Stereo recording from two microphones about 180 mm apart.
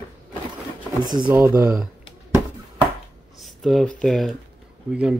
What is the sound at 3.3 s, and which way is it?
Speech, centre (ahead or behind).